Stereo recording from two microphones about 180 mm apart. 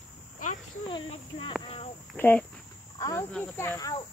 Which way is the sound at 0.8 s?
25° left (ahead or behind).